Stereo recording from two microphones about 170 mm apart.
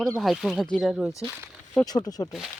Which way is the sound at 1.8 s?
25° left (ahead or behind).